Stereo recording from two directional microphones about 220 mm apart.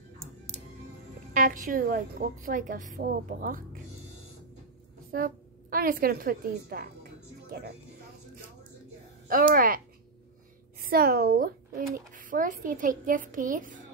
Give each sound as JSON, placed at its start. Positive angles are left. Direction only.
{"t": 1.4, "sound": "a child's voice", "side_deg": -35}
{"t": 5.1, "sound": "a sound", "side_deg": -40}
{"t": 9.3, "sound": "a child's voice", "side_deg": -40}
{"t": 10.8, "sound": "a child's voice", "side_deg": -45}